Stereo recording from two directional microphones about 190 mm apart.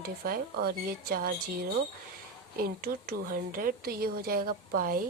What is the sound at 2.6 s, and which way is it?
Speech, 50° right (ahead or behind).